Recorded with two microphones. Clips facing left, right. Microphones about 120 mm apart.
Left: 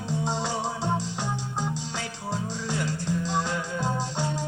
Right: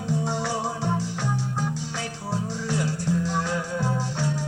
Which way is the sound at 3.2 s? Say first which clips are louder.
Right 1 dB; 20° left (ahead or behind).